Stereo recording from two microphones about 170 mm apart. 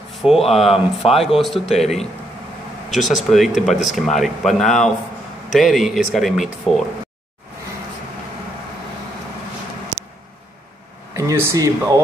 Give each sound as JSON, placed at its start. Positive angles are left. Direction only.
{"t": 0.1, "sound": "a sound", "side_deg": 0}
{"t": 0.5, "sound": "speech", "side_deg": 0}
{"t": 11.1, "sound": "speech", "side_deg": -15}